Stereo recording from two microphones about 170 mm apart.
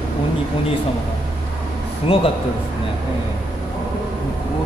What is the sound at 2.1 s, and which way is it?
Speech, 35° left (ahead or behind).